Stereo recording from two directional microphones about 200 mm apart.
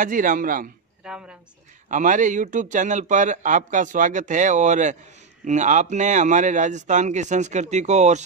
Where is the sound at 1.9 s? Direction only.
40° right (ahead or behind).